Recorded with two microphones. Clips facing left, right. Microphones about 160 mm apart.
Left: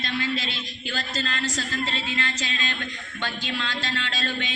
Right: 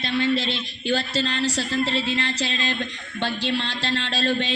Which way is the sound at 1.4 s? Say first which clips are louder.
Right 6 dB; 35° right (ahead or behind).